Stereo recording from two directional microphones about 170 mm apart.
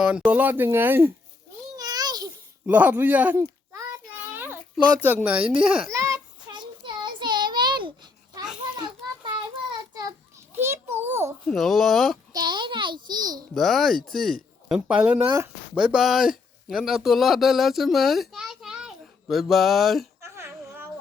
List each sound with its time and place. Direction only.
0.0 s speech: 5° right (ahead or behind)
1.7 s a sound: 20° right (ahead or behind)
2.6 s speech: 10° right (ahead or behind)
4.4 s a sound: 10° right (ahead or behind)
5.0 s speech: 10° right (ahead or behind)
5.9 s child singing: 20° right (ahead or behind)
8.7 s a sound: 25° right (ahead or behind)
10.5 s a sound: 15° right (ahead or behind)
11.4 s speech: centre (ahead or behind)
12.3 s babbling: 25° right (ahead or behind)
13.5 s a child's voice: centre (ahead or behind)
20.2 s babbling: 15° right (ahead or behind)